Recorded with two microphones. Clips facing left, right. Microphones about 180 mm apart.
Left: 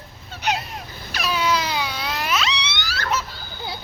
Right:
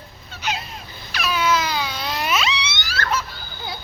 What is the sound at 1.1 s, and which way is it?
Baby cry, 35° left (ahead or behind).